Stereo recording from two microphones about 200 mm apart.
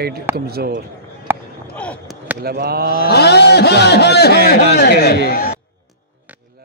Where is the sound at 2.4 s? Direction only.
50° right (ahead or behind).